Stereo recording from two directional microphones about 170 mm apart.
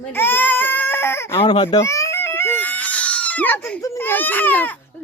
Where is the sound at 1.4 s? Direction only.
25° left (ahead or behind); by 3.8 s 10° left (ahead or behind).